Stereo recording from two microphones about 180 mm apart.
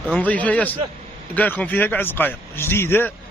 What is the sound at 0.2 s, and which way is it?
A man's voice, 10° left (ahead or behind).